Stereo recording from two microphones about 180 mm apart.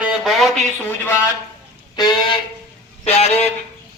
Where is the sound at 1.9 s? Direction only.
25° left (ahead or behind).